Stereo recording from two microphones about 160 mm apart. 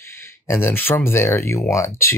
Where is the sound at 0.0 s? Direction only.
15° left (ahead or behind).